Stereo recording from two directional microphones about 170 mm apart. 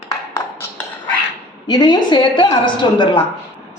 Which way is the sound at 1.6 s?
25° left (ahead or behind).